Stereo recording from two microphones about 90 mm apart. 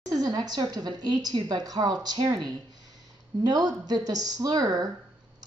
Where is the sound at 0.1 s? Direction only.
45° right (ahead or behind).